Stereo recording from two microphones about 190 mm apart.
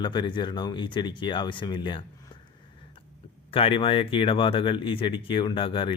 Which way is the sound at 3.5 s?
30° left (ahead or behind).